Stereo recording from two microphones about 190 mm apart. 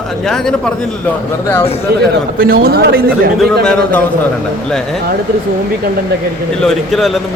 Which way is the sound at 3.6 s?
5° left (ahead or behind).